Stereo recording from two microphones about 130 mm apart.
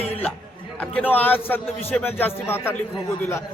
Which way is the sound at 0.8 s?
10° left (ahead or behind).